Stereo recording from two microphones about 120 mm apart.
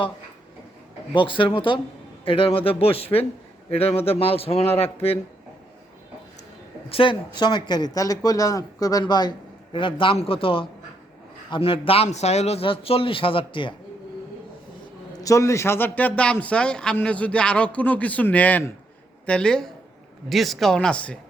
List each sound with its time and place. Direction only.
1.1 s speech: 45° left (ahead or behind)
6.9 s speech: 45° left (ahead or behind)
12.0 s speech: 65° left (ahead or behind); by 13.7 s 45° left (ahead or behind)
15.1 s a man's voice: 30° left (ahead or behind); by 21.2 s 10° left (ahead or behind)